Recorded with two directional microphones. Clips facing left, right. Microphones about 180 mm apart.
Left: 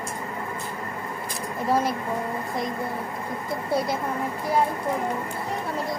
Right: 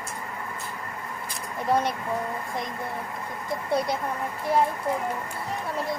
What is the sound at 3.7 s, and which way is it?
Speech, 5° left (ahead or behind).